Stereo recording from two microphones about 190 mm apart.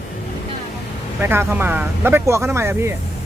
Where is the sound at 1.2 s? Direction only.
10° right (ahead or behind).